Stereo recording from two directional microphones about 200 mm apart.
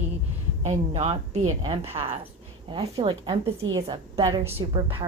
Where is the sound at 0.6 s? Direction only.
35° right (ahead or behind).